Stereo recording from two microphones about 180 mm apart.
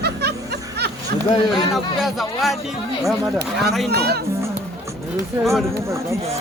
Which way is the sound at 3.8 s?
65° right (ahead or behind).